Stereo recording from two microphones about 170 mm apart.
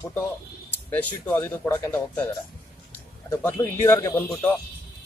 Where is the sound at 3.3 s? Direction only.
15° left (ahead or behind).